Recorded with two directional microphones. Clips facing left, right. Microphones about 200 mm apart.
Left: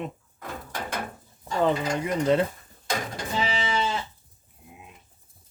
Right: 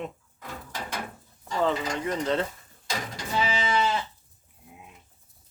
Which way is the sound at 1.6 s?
10° left (ahead or behind).